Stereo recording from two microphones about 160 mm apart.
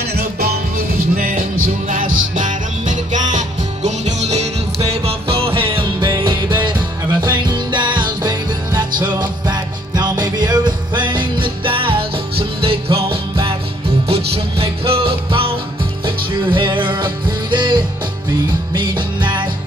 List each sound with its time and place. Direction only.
0.1 s music: 70° right (ahead or behind); by 19.4 s 30° right (ahead or behind)